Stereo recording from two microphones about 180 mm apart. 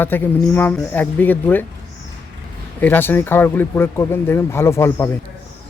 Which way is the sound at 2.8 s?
10° left (ahead or behind).